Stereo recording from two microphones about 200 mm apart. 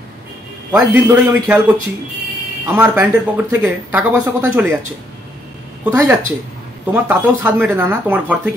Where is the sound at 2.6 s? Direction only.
10° right (ahead or behind).